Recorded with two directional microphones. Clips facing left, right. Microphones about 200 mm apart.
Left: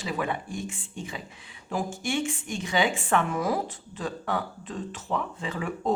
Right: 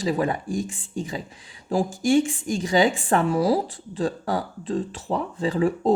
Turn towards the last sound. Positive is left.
turn(degrees=-35)  # may be behind; listen again after turning